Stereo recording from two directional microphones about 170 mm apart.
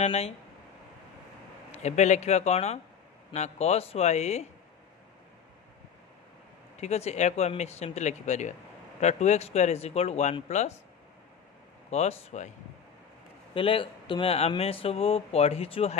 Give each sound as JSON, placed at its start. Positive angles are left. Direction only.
{"t": 0.0, "sound": "speech", "side_deg": 40}
{"t": 1.7, "sound": "speech", "side_deg": 40}
{"t": 6.8, "sound": "speech", "side_deg": 40}
{"t": 11.9, "sound": "speech", "side_deg": 40}
{"t": 13.6, "sound": "speech", "side_deg": 30}